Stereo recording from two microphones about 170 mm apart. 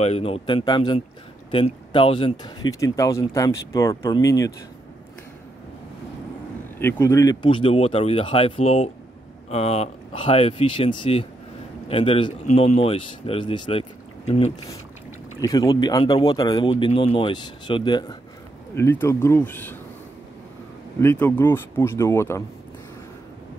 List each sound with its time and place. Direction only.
0.0 s speech: 35° left (ahead or behind); by 4.5 s 20° left (ahead or behind)
6.8 s speech: 15° left (ahead or behind)
7.4 s speech: 30° left (ahead or behind)
15.4 s speech: 20° left (ahead or behind)
18.8 s speech: 15° left (ahead or behind)
21.0 s speech: 15° left (ahead or behind)